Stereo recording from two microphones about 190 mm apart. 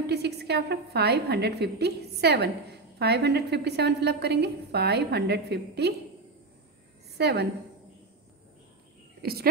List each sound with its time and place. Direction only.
0.0 s a woman's voice: 60° right (ahead or behind)
7.2 s a woman's voice: 60° right (ahead or behind)
9.2 s speech: 55° right (ahead or behind)